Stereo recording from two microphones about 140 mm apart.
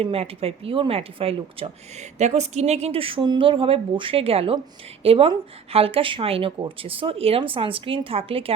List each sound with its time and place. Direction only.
0.0 s speech: 45° right (ahead or behind)